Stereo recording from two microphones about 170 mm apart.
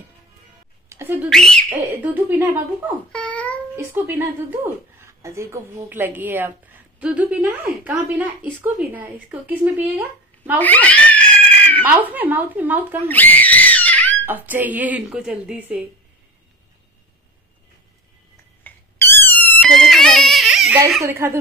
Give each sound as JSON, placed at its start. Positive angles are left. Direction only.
{"t": 0.8, "sound": "whistling", "side_deg": -15}
{"t": 1.3, "sound": "speech", "side_deg": 5}
{"t": 2.1, "sound": "speech", "side_deg": -15}
{"t": 3.1, "sound": "babbling", "side_deg": 5}
{"t": 3.7, "sound": "speech", "side_deg": -15}
{"t": 10.6, "sound": "cat", "side_deg": 10}
{"t": 11.8, "sound": "speech", "side_deg": -10}
{"t": 13.1, "sound": "screaming", "side_deg": 10}
{"t": 14.2, "sound": "speech", "side_deg": -10}
{"t": 18.6, "sound": "squeak", "side_deg": 15}
{"t": 21.0, "sound": "speech", "side_deg": -15}